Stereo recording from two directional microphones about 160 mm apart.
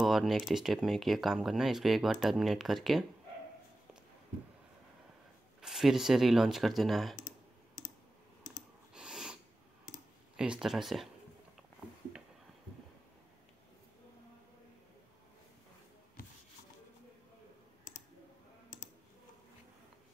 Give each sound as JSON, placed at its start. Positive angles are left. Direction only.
{"t": 0.0, "sound": "speech", "side_deg": 0}
{"t": 5.6, "sound": "speech", "side_deg": 0}
{"t": 7.2, "sound": "computer keyboard", "side_deg": 55}
{"t": 8.9, "sound": "a sound", "side_deg": -5}
{"t": 10.3, "sound": "speech", "side_deg": -5}